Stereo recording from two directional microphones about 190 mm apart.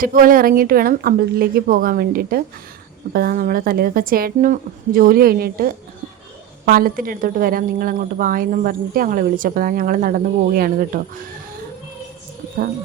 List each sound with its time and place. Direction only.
0.0 s a woman's voice: 45° right (ahead or behind)